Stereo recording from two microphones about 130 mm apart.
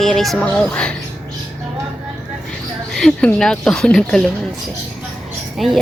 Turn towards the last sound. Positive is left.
turn(degrees=0)  # may be behind; listen again after turning